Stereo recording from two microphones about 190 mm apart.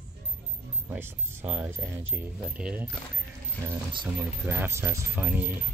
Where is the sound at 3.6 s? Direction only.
25° right (ahead or behind).